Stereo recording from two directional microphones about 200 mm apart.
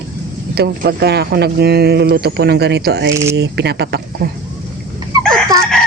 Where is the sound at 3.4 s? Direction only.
55° right (ahead or behind).